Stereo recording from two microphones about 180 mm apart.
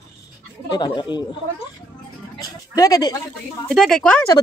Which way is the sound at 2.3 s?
20° left (ahead or behind).